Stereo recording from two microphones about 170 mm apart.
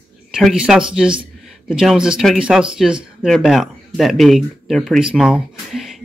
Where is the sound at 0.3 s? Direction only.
5° right (ahead or behind).